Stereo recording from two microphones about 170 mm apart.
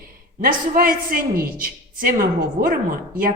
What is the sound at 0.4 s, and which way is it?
A woman's voice, 55° right (ahead or behind).